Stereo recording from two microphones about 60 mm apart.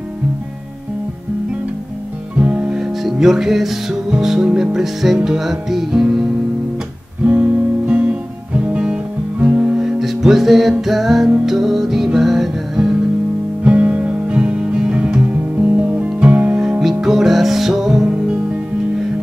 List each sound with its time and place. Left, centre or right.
2.3 s music: right
2.7 s music: centre
7.2 s guitar: centre
9.8 s music: centre
13.7 s music: right
16.8 s music: centre